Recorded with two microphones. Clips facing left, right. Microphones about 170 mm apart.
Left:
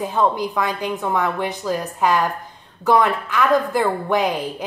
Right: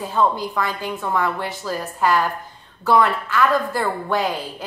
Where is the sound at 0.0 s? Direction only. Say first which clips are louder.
Left 1 dB; 15° left (ahead or behind).